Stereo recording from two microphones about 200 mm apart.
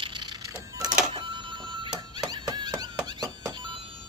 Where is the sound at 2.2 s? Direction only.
20° right (ahead or behind).